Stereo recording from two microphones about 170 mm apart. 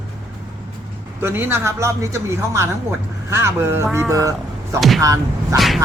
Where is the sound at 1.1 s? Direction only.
10° right (ahead or behind).